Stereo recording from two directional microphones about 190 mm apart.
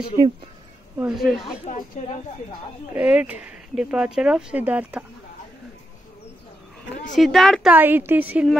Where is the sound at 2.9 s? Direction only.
10° right (ahead or behind).